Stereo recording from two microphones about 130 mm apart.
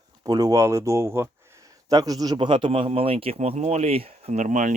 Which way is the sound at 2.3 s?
40° right (ahead or behind).